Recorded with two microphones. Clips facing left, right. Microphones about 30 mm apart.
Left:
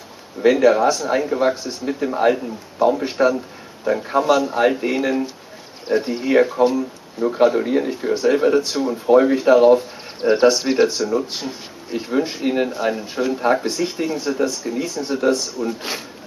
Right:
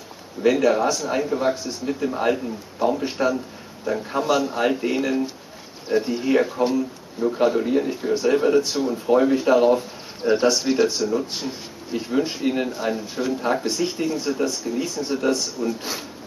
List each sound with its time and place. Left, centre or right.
0.4 s speech: left
0.9 s speech: centre
3.0 s speech: left
4.2 s speech: centre
10.2 s speech: left